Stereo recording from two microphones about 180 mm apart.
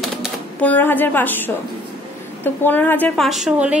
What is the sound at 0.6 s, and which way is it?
Speech, 10° left (ahead or behind).